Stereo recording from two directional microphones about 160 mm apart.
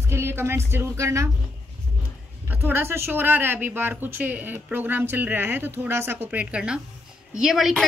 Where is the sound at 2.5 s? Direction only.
10° right (ahead or behind).